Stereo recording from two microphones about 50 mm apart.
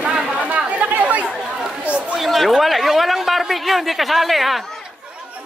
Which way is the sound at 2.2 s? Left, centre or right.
Centre.